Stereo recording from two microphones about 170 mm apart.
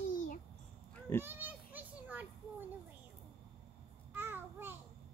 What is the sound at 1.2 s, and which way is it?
Oink, 10° right (ahead or behind).